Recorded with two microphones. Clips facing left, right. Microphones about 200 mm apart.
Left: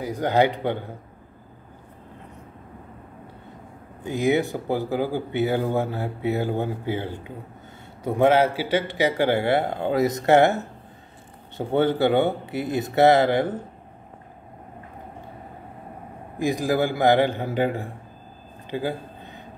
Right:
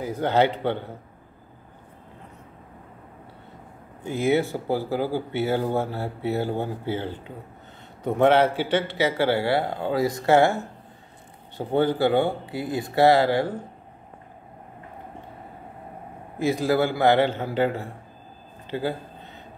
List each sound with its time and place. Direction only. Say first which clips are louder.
0.0 s speech: left 1 dB; 15° left (ahead or behind)
4.0 s a man's voice: left 1 dB; 15° left (ahead or behind)
16.3 s speech: right 1 dB; 15° left (ahead or behind)
18.7 s a sound: even; 15° left (ahead or behind)